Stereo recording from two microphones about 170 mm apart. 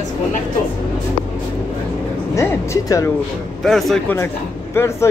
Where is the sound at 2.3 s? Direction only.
15° left (ahead or behind).